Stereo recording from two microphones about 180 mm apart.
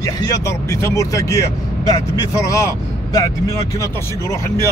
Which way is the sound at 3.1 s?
20° left (ahead or behind).